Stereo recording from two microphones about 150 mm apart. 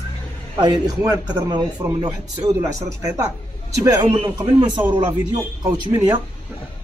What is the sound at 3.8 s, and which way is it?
A man's voice, 20° right (ahead or behind).